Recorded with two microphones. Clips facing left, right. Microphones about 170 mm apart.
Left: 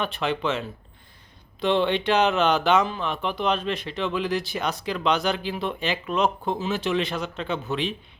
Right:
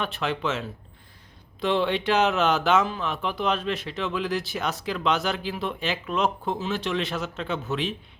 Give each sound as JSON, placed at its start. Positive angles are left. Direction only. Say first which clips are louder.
{"t": 0.0, "sound": "speech", "louder": "left 2 dB", "side_deg": 0}